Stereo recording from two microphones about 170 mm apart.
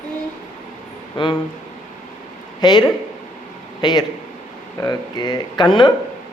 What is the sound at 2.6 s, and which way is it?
Speech, 25° left (ahead or behind).